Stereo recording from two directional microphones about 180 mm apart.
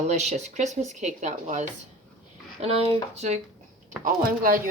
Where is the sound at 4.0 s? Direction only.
50° right (ahead or behind).